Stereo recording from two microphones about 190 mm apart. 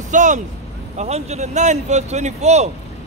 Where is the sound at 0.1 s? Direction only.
40° right (ahead or behind).